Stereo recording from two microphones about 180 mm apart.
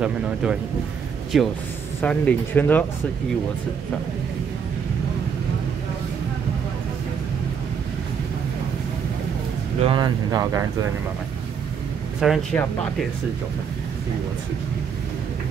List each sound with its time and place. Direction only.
0.0 s speech: 5° right (ahead or behind); by 2.8 s 10° left (ahead or behind)
9.8 s speech: 25° right (ahead or behind)
12.2 s speech: centre (ahead or behind)